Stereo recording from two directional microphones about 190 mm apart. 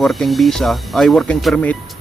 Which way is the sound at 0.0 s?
Centre (ahead or behind).